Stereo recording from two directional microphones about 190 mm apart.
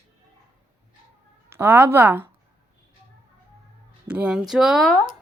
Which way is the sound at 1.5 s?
10° right (ahead or behind).